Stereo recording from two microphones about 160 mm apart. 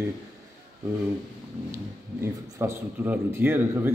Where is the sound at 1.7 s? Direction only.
15° right (ahead or behind).